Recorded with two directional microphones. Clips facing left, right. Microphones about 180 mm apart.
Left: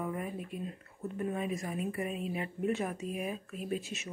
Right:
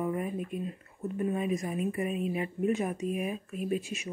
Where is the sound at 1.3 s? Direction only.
20° right (ahead or behind).